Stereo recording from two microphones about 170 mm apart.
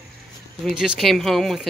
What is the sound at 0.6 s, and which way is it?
Speech, centre (ahead or behind).